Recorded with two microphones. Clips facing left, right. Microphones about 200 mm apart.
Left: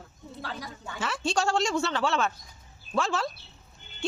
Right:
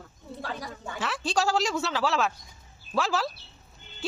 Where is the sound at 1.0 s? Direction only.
Centre (ahead or behind).